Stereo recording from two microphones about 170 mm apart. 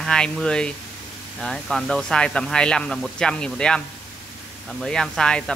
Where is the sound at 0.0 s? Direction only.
5° left (ahead or behind).